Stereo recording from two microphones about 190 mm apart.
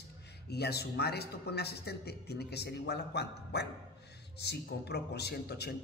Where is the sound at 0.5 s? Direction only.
60° left (ahead or behind).